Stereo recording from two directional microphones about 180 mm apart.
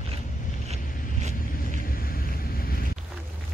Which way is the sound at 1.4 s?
50° left (ahead or behind).